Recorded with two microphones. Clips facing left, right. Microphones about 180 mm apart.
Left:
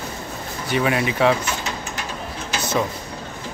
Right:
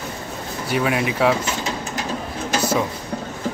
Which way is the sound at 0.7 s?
Centre (ahead or behind).